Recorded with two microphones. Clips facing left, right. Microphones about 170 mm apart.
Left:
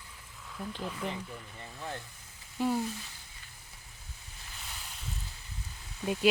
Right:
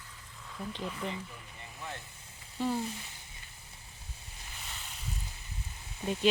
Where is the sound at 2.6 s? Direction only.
10° left (ahead or behind).